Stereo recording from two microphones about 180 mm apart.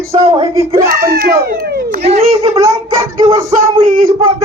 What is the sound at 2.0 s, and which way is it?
Speech, 35° right (ahead or behind).